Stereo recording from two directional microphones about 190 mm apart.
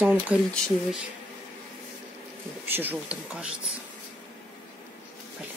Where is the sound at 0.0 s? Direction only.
10° right (ahead or behind).